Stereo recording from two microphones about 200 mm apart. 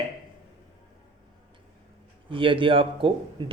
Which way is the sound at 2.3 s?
25° right (ahead or behind).